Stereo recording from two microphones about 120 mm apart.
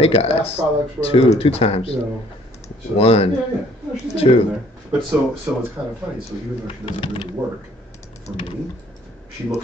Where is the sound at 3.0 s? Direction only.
55° left (ahead or behind).